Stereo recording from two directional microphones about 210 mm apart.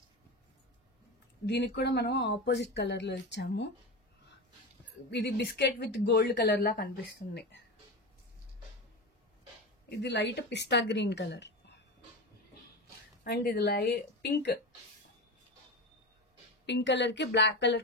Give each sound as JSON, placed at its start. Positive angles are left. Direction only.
{"t": 1.4, "sound": "speech", "side_deg": 55}
{"t": 5.1, "sound": "speech", "side_deg": 50}
{"t": 9.8, "sound": "speech", "side_deg": 55}
{"t": 13.2, "sound": "speech", "side_deg": 45}
{"t": 16.6, "sound": "speech", "side_deg": 55}